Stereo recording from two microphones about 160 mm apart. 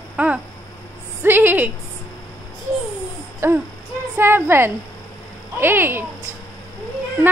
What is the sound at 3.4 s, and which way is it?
A woman's voice, 15° right (ahead or behind).